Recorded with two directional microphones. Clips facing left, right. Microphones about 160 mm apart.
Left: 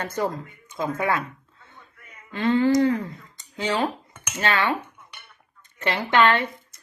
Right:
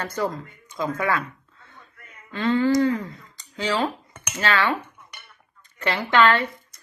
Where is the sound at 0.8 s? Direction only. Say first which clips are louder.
Even; 25° left (ahead or behind).